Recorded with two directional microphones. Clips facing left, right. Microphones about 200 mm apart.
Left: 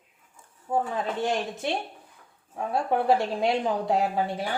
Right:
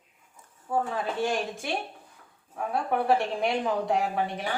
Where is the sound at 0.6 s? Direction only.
20° left (ahead or behind).